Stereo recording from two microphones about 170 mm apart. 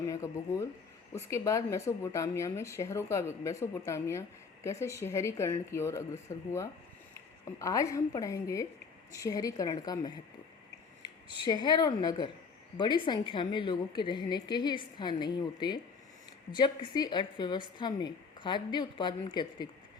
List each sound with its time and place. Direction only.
0.1 s speech: 20° left (ahead or behind)
7.6 s a woman's voice: 20° left (ahead or behind)